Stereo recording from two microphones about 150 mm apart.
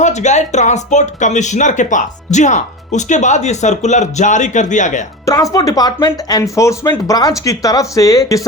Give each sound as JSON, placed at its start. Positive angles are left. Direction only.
{"t": 0.0, "sound": "speech", "side_deg": 50}
{"t": 5.2, "sound": "speech", "side_deg": 20}